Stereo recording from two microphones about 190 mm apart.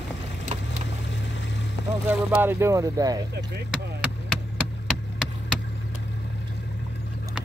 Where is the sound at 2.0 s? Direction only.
10° right (ahead or behind).